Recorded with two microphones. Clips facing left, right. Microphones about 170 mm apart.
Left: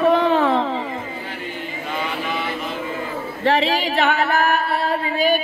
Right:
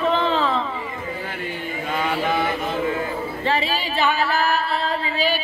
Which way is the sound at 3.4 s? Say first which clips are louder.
Left 6 dB; 70° left (ahead or behind).